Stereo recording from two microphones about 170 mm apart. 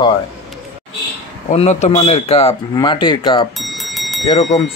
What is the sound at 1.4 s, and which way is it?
Speech, 40° left (ahead or behind).